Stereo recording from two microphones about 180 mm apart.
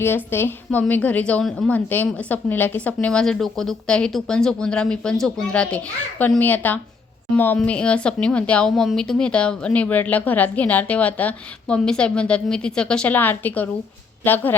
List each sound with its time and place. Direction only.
0.3 s a woman's voice: 10° left (ahead or behind)